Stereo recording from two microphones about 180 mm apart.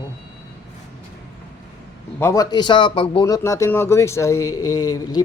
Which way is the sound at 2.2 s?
20° left (ahead or behind).